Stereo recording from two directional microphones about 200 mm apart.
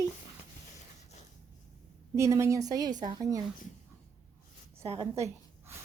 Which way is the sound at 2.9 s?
40° right (ahead or behind).